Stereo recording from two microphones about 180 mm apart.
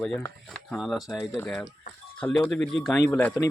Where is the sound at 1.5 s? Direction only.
5° left (ahead or behind).